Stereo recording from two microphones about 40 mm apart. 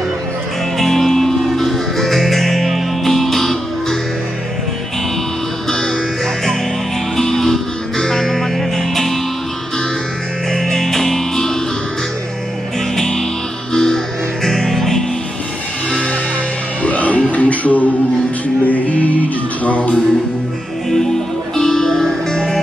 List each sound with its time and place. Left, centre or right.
0.7 s music: centre
5.7 s music: centre
7.2 s music: centre
10.5 s music: centre
12.9 s music: centre
16.8 s music: left
20.9 s music: centre